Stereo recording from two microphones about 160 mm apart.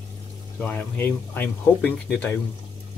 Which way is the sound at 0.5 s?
10° left (ahead or behind).